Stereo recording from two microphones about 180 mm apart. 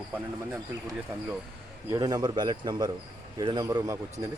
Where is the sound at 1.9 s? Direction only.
20° right (ahead or behind).